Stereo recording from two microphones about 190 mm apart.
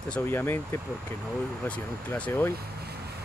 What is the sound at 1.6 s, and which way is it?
Speech, 10° left (ahead or behind).